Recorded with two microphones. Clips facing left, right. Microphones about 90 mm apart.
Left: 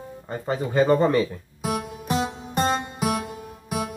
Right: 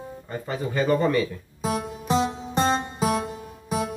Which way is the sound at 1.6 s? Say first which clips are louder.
Right 1 dB; 30° right (ahead or behind).